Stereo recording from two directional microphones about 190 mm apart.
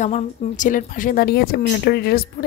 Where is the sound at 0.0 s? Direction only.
40° left (ahead or behind).